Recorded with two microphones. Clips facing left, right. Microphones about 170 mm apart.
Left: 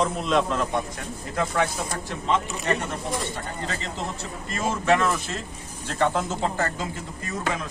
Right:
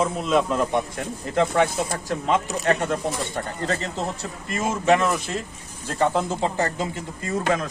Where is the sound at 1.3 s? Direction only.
25° right (ahead or behind).